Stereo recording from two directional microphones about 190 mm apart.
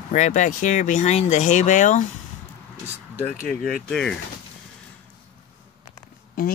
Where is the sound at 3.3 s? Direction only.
50° left (ahead or behind).